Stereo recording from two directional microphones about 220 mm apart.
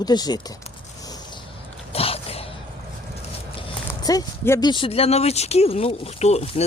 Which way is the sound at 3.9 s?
15° left (ahead or behind).